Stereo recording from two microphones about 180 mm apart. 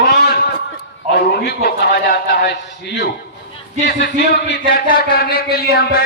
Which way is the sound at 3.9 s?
65° left (ahead or behind).